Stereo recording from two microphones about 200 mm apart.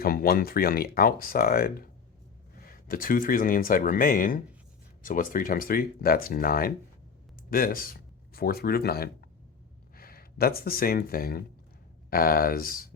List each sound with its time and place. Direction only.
0.0 s speech: 50° left (ahead or behind)
2.8 s speech: 45° left (ahead or behind)